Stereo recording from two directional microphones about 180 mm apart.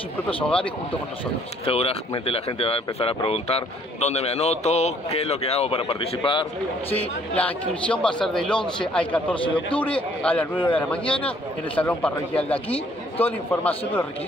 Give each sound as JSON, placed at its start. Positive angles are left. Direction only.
{"t": 0.4, "sound": "a man's voice", "side_deg": 5}
{"t": 1.7, "sound": "speech", "side_deg": 35}
{"t": 7.3, "sound": "a man's voice", "side_deg": 5}
{"t": 9.3, "sound": "a man's voice", "side_deg": 30}
{"t": 10.2, "sound": "a man's voice", "side_deg": 10}